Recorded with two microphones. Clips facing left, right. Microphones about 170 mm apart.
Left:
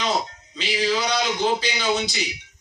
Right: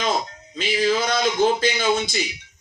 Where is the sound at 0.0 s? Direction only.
50° right (ahead or behind).